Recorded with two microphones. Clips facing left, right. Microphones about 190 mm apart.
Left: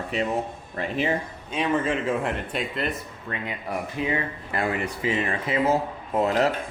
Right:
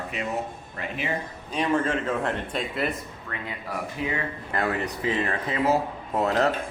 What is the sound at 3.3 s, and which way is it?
Speech, 20° left (ahead or behind).